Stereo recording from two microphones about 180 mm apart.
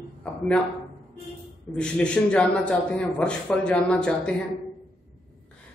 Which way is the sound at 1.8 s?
5° left (ahead or behind).